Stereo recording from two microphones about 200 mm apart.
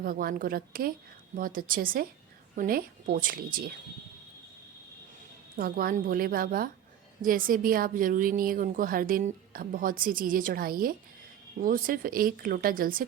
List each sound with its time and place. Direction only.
0.0 s a woman's voice: 45° right (ahead or behind)
5.5 s a woman's voice: 45° right (ahead or behind)